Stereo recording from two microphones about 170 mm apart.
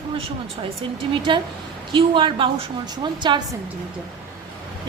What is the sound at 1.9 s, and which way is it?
A woman's voice, 30° right (ahead or behind).